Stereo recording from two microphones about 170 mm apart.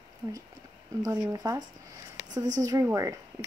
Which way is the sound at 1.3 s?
20° right (ahead or behind).